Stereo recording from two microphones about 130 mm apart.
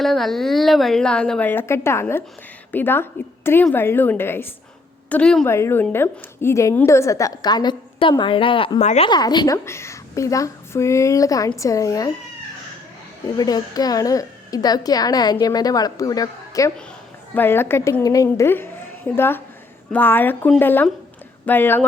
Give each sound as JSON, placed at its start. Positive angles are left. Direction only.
{"t": 0.0, "sound": "a woman's voice", "side_deg": 0}
{"t": 5.5, "sound": "a woman's voice", "side_deg": 20}
{"t": 8.8, "sound": "a woman's voice", "side_deg": 60}
{"t": 9.0, "sound": "a woman's voice", "side_deg": 35}
{"t": 9.6, "sound": "speech", "side_deg": 20}
{"t": 13.3, "sound": "speech", "side_deg": 30}
{"t": 17.3, "sound": "a woman's voice", "side_deg": 15}